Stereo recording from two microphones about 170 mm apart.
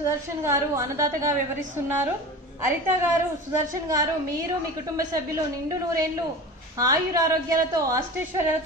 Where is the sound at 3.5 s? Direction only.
20° right (ahead or behind).